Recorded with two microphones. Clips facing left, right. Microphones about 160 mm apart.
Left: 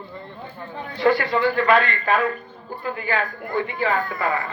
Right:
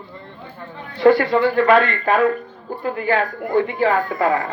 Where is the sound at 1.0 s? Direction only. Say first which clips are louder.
Right 5 dB; 50° right (ahead or behind).